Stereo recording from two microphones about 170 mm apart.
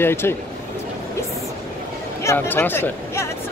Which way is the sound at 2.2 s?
10° left (ahead or behind).